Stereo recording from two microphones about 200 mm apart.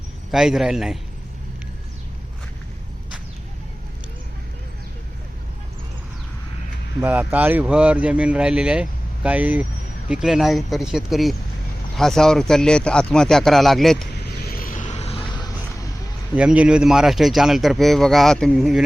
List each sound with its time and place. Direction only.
0.3 s a man's voice: centre (ahead or behind)
7.0 s a man's voice: 10° right (ahead or behind)
14.2 s a sound: 50° left (ahead or behind); by 15.4 s 25° left (ahead or behind)
16.3 s a man's voice: 5° right (ahead or behind)